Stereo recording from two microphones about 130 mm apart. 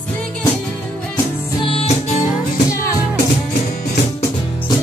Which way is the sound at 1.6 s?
50° left (ahead or behind).